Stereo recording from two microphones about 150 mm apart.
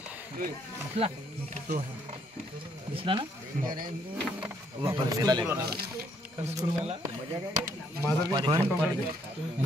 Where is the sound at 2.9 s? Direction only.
35° right (ahead or behind).